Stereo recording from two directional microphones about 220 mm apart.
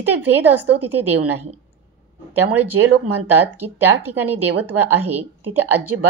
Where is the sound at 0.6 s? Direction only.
90° right.